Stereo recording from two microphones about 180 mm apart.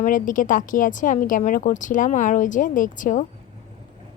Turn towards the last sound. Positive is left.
turn(degrees=45)  # may be behind; listen again after turning